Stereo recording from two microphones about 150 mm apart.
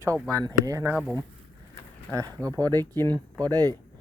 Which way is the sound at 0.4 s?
25° right (ahead or behind).